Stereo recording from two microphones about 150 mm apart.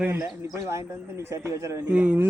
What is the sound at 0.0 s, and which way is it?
Speech, 10° right (ahead or behind).